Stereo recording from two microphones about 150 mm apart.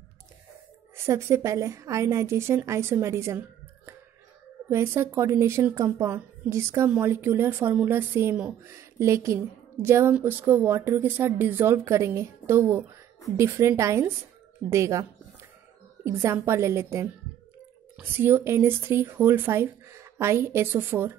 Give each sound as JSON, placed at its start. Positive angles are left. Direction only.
{"t": 0.9, "sound": "a woman's voice", "side_deg": -15}